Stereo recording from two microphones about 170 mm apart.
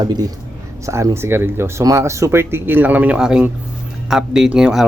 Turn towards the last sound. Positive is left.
turn(degrees=-5)  # may be behind; listen again after turning